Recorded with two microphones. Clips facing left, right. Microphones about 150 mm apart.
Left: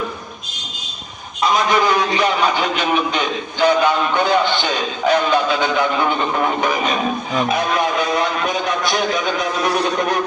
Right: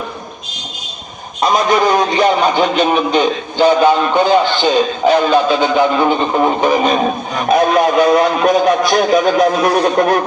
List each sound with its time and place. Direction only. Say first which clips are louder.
1.4 s a man's voice: right 4 dB; 45° right (ahead or behind)
7.4 s a man's voice: right 9 dB; 45° right (ahead or behind)